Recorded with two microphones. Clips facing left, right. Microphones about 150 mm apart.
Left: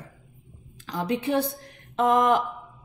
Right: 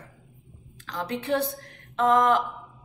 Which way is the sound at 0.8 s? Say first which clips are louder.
Left 3 dB; 15° left (ahead or behind).